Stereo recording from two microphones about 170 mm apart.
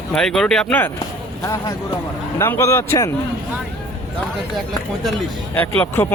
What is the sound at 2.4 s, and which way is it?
Speech, 15° left (ahead or behind).